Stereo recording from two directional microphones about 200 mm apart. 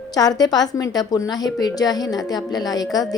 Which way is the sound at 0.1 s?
20° left (ahead or behind).